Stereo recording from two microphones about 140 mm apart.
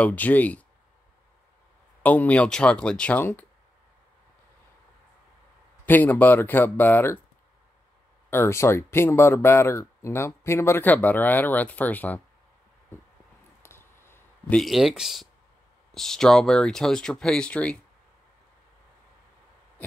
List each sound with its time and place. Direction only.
0.0 s speech: 10° left (ahead or behind)
2.0 s speech: 10° left (ahead or behind)
5.9 s speech: 15° left (ahead or behind)
8.3 s speech: 15° left (ahead or behind)
13.6 s a sound: 15° left (ahead or behind)
14.6 s speech: centre (ahead or behind)